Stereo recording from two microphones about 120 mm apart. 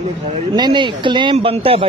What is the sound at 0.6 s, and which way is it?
Speech, 40° right (ahead or behind).